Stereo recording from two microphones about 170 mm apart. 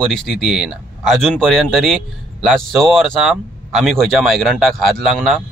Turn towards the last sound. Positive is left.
turn(degrees=0)  # may be behind; listen again after turning